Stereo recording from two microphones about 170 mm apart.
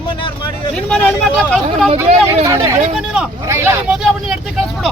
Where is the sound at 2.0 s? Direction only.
15° right (ahead or behind).